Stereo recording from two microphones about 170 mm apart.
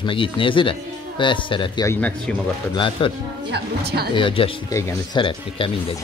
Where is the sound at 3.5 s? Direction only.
70° right (ahead or behind).